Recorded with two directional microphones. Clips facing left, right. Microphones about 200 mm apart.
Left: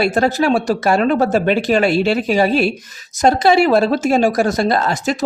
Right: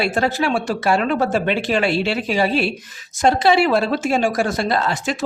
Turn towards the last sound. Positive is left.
turn(degrees=40)  # may be behind; listen again after turning